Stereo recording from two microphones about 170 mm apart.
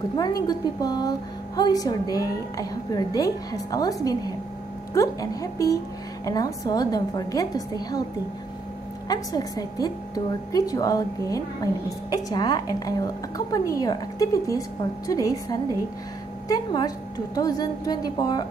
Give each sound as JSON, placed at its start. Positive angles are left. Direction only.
{"t": 0.1, "sound": "a woman's voice", "side_deg": 25}
{"t": 9.1, "sound": "a woman's voice", "side_deg": 20}